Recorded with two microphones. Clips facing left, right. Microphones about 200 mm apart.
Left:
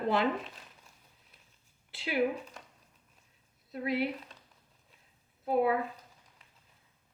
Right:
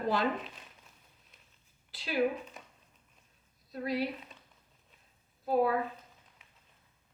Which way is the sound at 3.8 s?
25° left (ahead or behind).